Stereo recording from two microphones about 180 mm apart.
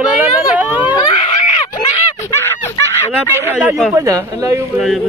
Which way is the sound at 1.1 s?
40° left (ahead or behind).